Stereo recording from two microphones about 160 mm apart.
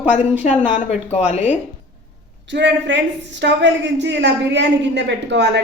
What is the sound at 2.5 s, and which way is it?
A woman's voice, 90° right.